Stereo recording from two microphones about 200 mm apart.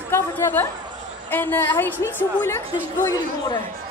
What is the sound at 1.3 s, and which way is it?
A woman's voice, 10° left (ahead or behind).